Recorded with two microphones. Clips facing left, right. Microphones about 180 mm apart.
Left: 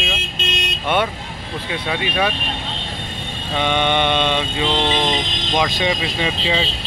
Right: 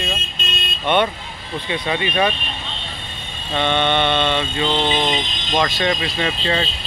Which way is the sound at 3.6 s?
15° left (ahead or behind).